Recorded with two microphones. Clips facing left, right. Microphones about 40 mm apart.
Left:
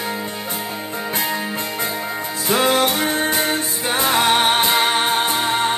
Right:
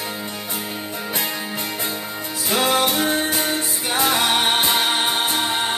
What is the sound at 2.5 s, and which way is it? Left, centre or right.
Music, left.